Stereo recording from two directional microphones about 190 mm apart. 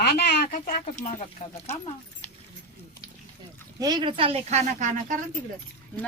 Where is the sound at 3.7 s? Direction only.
20° right (ahead or behind); by 5.2 s 40° right (ahead or behind).